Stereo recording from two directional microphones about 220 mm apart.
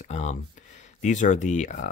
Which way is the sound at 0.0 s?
30° left (ahead or behind).